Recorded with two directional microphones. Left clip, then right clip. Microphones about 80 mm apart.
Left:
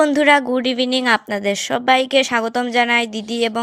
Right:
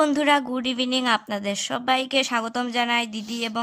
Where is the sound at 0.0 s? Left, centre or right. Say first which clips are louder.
Left 6 dB; left.